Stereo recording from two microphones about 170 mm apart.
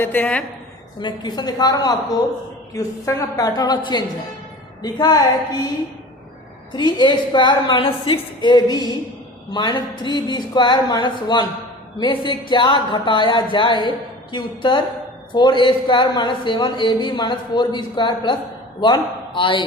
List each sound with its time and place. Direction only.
0.0 s a woman's voice: 10° left (ahead or behind)
0.9 s a woman's voice: 25° left (ahead or behind)
6.7 s a woman's voice: 25° left (ahead or behind)